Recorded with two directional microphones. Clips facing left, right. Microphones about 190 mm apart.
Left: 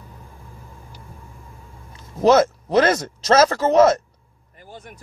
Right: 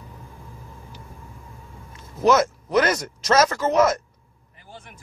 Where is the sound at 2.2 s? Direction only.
30° left (ahead or behind).